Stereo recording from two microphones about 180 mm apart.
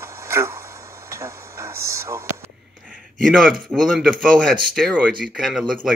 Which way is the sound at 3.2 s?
Centre (ahead or behind).